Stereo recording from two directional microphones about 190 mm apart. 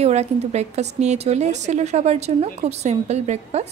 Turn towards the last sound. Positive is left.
turn(degrees=-35)  # may be behind; listen again after turning